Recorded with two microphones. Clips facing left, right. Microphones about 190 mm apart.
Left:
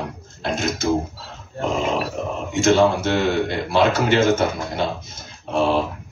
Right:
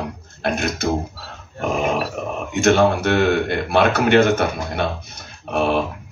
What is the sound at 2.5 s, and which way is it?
Speech, 65° right (ahead or behind).